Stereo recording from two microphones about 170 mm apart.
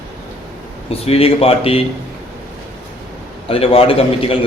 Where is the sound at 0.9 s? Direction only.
35° left (ahead or behind).